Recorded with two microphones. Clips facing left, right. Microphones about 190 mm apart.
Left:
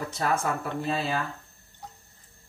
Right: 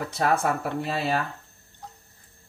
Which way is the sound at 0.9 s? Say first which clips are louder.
Right 4 dB; 70° right (ahead or behind).